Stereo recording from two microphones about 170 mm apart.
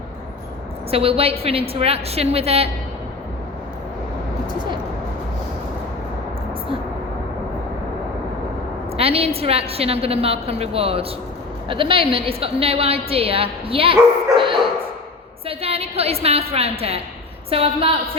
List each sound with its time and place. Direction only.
0.9 s a woman's voice: 35° right (ahead or behind)
8.9 s a woman's voice: 35° right (ahead or behind)